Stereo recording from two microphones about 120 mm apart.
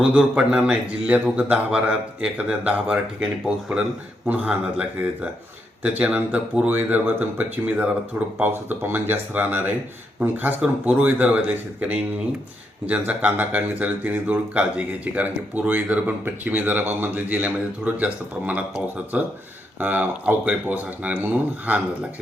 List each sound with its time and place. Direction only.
0.0 s speech: 10° right (ahead or behind)